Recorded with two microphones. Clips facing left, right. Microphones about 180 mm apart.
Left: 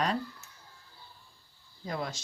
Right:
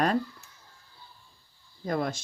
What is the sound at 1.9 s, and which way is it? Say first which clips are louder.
Speech: right 6 dB; 50° right (ahead or behind).